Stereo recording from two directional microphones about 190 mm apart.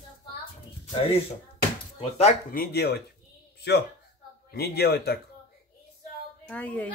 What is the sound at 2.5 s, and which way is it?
Speech, 55° left (ahead or behind).